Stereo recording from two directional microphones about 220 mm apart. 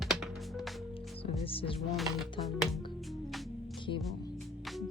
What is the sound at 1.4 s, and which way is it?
Music, 25° left (ahead or behind).